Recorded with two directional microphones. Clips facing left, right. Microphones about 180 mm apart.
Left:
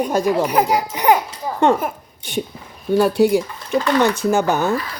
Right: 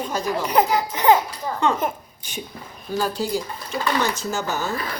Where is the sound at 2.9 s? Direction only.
65° left (ahead or behind).